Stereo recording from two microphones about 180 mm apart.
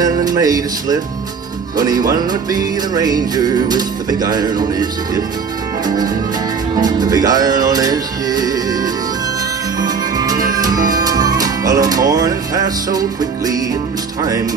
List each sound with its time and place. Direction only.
0.0 s music: 20° right (ahead or behind)
6.8 s music: 20° right (ahead or behind)
9.8 s music: 20° right (ahead or behind)